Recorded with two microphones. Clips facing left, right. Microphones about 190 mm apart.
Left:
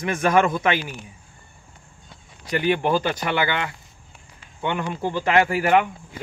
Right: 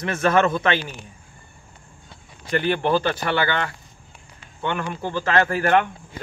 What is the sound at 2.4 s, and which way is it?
Speech, 10° left (ahead or behind).